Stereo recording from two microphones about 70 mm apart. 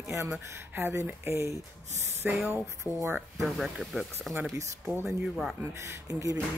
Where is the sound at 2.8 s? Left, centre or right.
Right.